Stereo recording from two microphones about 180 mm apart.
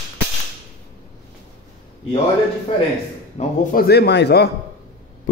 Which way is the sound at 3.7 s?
60° left (ahead or behind).